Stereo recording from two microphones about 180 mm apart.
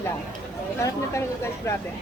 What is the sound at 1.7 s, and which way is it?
Speech, 15° left (ahead or behind).